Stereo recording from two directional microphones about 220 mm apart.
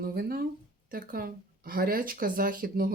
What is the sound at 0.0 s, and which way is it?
Speech, 45° right (ahead or behind).